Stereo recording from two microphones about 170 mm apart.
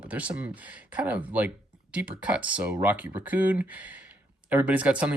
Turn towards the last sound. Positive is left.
turn(degrees=-10)  # may be behind; listen again after turning